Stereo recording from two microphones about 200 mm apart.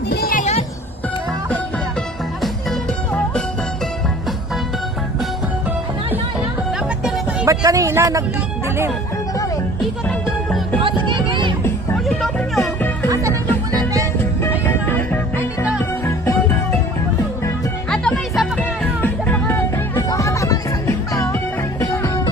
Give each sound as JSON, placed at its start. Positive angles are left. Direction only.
{"t": 0.1, "sound": "a sound", "side_deg": 50}
{"t": 2.4, "sound": "music", "side_deg": 5}
{"t": 6.7, "sound": "music", "side_deg": -5}
{"t": 7.4, "sound": "speech", "side_deg": -15}
{"t": 8.6, "sound": "music", "side_deg": -10}
{"t": 10.1, "sound": "music", "side_deg": 5}
{"t": 10.8, "sound": "a sound", "side_deg": -25}
{"t": 12.0, "sound": "music", "side_deg": 0}
{"t": 14.6, "sound": "music", "side_deg": 10}
{"t": 15.4, "sound": "music", "side_deg": -5}
{"t": 15.8, "sound": "music", "side_deg": 10}
{"t": 17.8, "sound": "music", "side_deg": 5}